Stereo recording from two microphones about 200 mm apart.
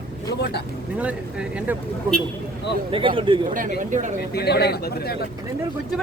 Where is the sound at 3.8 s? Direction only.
40° right (ahead or behind).